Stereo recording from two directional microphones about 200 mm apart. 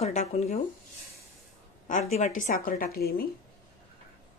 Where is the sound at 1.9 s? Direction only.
35° left (ahead or behind).